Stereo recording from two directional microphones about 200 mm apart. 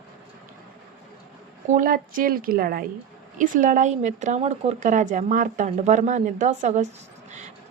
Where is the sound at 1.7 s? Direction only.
45° right (ahead or behind).